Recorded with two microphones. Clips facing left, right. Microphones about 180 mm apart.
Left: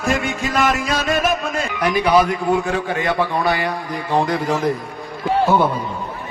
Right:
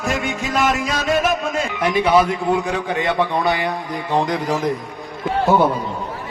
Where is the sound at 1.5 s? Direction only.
20° right (ahead or behind).